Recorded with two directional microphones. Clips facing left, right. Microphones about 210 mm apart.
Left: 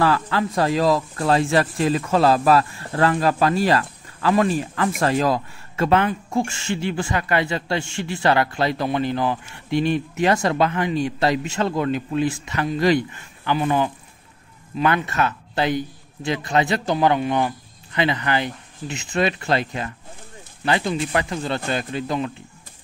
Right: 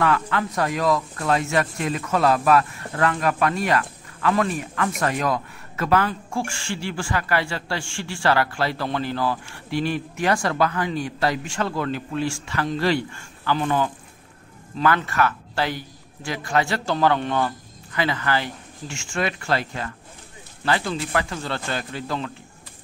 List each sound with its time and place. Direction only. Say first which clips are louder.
0.0 s speech: left 2 dB; 30° left (ahead or behind)